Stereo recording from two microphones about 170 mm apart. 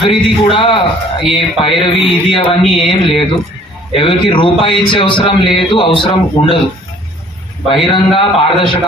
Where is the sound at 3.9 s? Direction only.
30° left (ahead or behind).